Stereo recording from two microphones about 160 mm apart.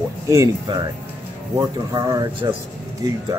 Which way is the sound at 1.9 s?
20° right (ahead or behind).